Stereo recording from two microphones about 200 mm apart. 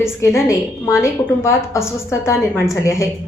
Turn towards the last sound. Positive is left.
turn(degrees=15)  # may be behind; listen again after turning